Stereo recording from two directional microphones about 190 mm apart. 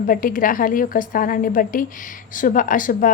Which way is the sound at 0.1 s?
45° left (ahead or behind).